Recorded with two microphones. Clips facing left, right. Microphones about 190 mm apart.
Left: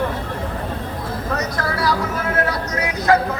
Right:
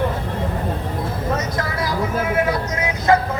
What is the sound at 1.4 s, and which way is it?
Vehicle, 70° left (ahead or behind).